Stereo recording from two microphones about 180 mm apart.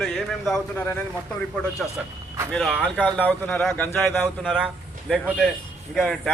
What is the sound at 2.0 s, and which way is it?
A man's voice, centre (ahead or behind).